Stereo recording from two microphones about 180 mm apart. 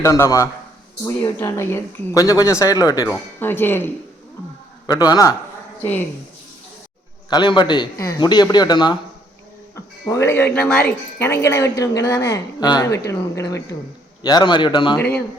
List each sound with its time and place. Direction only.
0.0 s a woman's voice: 15° left (ahead or behind)
4.9 s a woman's voice: 20° left (ahead or behind)
7.3 s a woman's voice: 25° left (ahead or behind)